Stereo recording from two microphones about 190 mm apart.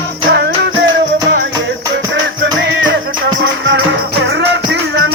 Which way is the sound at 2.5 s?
70° right (ahead or behind).